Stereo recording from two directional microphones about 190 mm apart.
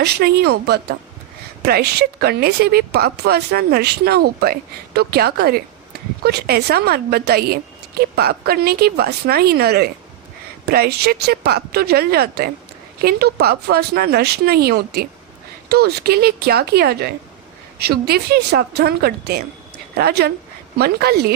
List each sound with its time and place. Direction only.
0.0 s a woman's voice: 55° right (ahead or behind)